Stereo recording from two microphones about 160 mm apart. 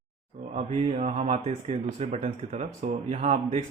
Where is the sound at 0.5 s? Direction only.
40° right (ahead or behind).